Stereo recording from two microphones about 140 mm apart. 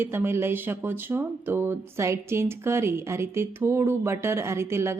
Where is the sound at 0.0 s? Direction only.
15° right (ahead or behind).